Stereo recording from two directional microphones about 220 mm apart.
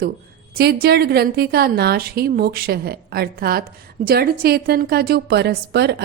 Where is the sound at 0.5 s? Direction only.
45° right (ahead or behind).